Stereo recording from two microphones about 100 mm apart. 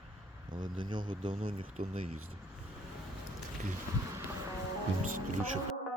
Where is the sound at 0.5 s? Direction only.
50° right (ahead or behind).